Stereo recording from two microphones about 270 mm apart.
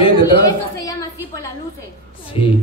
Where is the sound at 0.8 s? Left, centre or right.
Centre.